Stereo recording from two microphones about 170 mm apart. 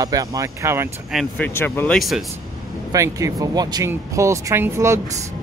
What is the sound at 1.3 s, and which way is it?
Speech, 10° left (ahead or behind).